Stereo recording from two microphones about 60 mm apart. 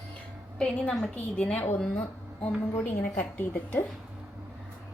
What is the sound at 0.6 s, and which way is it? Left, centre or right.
A woman's voice, centre.